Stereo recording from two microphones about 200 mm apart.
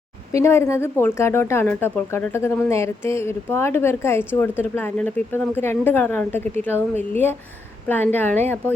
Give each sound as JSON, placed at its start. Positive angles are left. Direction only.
{"t": 0.3, "sound": "a woman's voice", "side_deg": 15}